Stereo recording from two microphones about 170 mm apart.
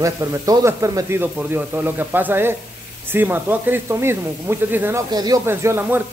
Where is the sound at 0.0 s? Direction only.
20° right (ahead or behind).